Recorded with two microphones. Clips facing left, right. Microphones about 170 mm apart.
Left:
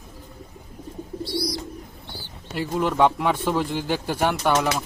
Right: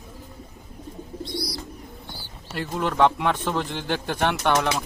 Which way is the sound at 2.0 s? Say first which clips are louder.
Left 1 dB; 10° right (ahead or behind).